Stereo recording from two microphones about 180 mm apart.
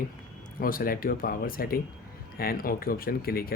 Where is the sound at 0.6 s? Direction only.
55° left (ahead or behind).